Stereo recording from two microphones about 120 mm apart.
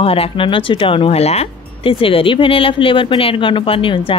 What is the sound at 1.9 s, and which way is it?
A woman's voice, 50° left (ahead or behind).